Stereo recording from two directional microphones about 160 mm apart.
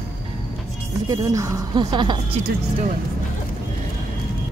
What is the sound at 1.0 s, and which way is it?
Speech, 20° right (ahead or behind).